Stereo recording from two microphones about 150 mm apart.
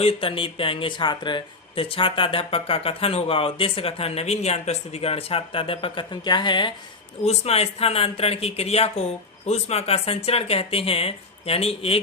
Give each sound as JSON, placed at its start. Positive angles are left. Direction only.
{"t": 0.0, "sound": "speech", "side_deg": 40}
{"t": 7.3, "sound": "speech", "side_deg": 45}